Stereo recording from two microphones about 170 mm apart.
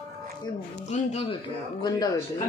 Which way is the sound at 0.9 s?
35° left (ahead or behind).